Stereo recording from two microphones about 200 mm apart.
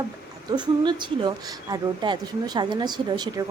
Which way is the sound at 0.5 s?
20° right (ahead or behind).